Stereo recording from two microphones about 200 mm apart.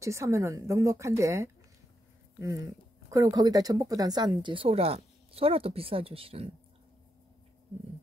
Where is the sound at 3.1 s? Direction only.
20° right (ahead or behind).